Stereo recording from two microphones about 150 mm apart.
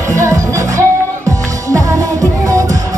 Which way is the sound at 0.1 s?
20° right (ahead or behind).